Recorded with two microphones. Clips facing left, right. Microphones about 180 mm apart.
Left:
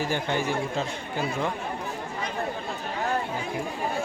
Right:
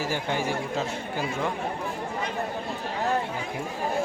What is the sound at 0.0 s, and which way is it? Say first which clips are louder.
Speech: left 1 dB; 5° right (ahead or behind).